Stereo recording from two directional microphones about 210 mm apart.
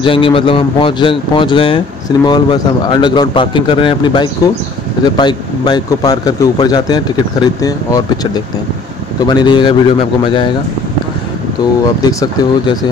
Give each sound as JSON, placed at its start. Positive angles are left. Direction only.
{"t": 0.0, "sound": "speech", "side_deg": 25}
{"t": 12.0, "sound": "speech", "side_deg": 15}